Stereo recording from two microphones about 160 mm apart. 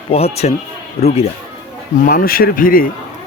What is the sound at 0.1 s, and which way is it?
Speech, 40° left (ahead or behind).